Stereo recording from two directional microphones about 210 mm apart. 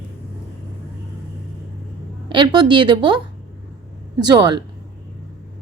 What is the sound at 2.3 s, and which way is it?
Speech, 20° right (ahead or behind).